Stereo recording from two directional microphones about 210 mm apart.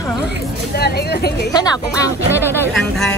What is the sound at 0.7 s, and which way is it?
Speech, 50° left (ahead or behind).